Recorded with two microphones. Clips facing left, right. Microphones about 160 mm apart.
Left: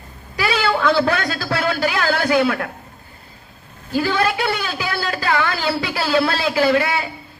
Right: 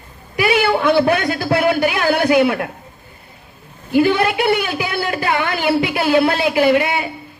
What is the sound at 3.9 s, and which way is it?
A woman's voice, 20° right (ahead or behind).